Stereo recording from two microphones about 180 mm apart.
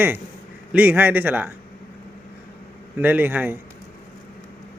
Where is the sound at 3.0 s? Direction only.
10° right (ahead or behind).